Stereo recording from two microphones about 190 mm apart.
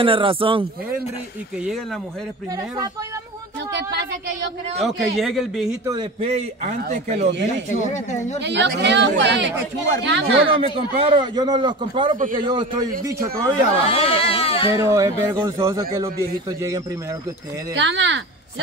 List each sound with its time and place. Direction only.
0.0 s a man's voice: 30° right (ahead or behind)
4.7 s speech: centre (ahead or behind)
6.2 s a man's voice: 35° right (ahead or behind)
7.9 s speech: 40° left (ahead or behind)
8.4 s speech: 65° right (ahead or behind)
10.5 s a man's voice: 30° right (ahead or behind)
13.7 s speech: 30° left (ahead or behind)
14.8 s a man's voice: 15° right (ahead or behind)
17.7 s speech: 75° right (ahead or behind)